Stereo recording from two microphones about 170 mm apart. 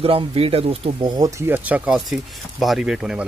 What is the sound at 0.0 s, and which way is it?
Speech, 35° right (ahead or behind).